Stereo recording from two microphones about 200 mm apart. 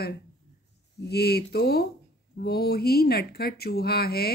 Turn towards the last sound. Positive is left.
turn(degrees=50)  # may be behind; listen again after turning